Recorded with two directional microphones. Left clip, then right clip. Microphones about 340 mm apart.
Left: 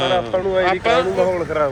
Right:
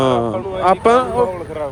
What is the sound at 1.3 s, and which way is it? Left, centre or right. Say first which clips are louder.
Speech: left 5 dB; left.